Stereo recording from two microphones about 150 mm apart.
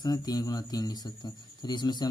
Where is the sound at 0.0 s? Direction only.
25° left (ahead or behind).